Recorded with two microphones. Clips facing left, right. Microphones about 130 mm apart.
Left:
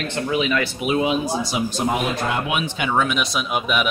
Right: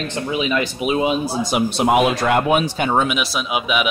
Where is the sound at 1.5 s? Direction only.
75° right (ahead or behind).